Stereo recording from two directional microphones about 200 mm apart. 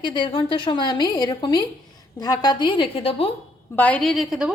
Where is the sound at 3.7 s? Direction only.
5° left (ahead or behind).